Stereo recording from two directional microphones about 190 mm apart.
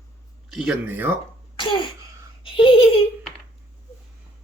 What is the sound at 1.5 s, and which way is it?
Cough, 25° left (ahead or behind).